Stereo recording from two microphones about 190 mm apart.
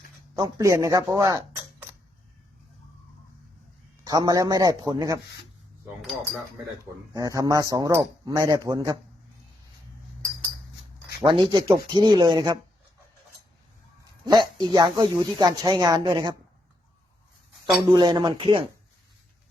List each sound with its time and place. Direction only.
0.3 s speech: 20° right (ahead or behind)
4.0 s speech: 20° right (ahead or behind)
6.0 s cutlery: centre (ahead or behind)
7.1 s speech: 15° right (ahead or behind)
11.2 s speech: 20° right (ahead or behind)
14.3 s speech: 25° right (ahead or behind)
17.7 s speech: 20° right (ahead or behind)